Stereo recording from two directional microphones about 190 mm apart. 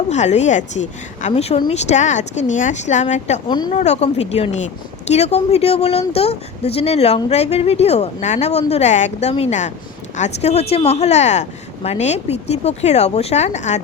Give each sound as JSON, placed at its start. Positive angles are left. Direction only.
{"t": 0.1, "sound": "speech", "side_deg": 35}